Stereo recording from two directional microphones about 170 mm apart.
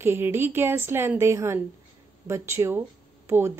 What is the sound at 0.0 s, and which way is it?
A woman's voice, 15° right (ahead or behind).